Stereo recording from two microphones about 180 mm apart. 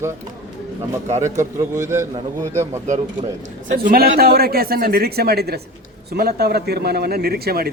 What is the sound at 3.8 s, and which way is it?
A man's voice, 55° right (ahead or behind).